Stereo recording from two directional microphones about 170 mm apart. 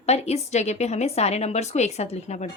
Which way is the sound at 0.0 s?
40° left (ahead or behind).